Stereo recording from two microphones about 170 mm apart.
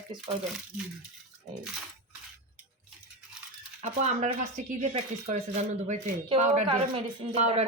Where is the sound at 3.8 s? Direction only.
45° right (ahead or behind).